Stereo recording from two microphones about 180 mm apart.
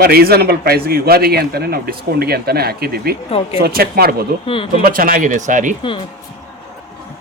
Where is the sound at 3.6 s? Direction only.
60° right (ahead or behind).